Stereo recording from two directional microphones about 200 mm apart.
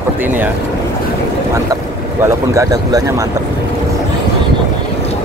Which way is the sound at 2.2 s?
15° right (ahead or behind).